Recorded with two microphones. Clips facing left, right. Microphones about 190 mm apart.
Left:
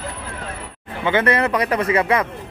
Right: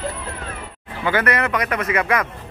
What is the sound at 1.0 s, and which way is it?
Speech, 25° left (ahead or behind).